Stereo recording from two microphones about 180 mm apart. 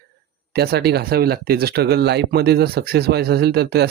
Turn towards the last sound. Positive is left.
turn(degrees=-60)  # may be behind; listen again after turning